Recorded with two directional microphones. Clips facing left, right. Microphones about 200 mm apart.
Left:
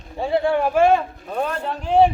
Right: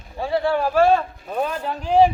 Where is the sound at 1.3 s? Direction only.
10° right (ahead or behind).